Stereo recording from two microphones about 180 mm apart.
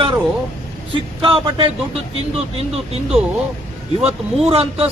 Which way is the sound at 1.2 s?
30° right (ahead or behind).